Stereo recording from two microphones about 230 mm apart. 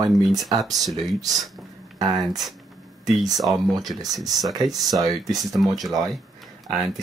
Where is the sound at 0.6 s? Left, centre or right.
Centre.